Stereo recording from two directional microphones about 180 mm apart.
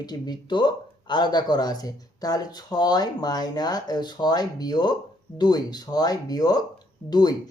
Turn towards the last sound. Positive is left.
turn(degrees=20)  # may be behind; listen again after turning